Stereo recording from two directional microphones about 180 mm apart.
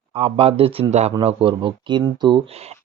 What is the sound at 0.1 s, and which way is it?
A man's voice, 30° right (ahead or behind).